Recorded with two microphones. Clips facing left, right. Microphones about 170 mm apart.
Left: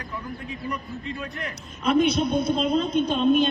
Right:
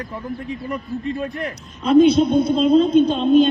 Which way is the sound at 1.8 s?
25° right (ahead or behind).